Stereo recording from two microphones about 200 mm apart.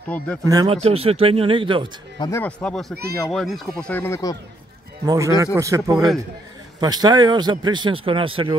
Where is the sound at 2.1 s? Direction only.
20° left (ahead or behind).